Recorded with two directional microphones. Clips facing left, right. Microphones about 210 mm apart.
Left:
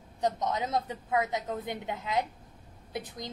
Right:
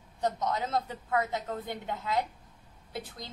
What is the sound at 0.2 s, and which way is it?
A woman's voice, 15° left (ahead or behind).